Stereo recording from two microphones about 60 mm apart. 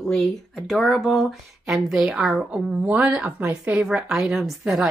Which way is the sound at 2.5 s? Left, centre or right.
Centre.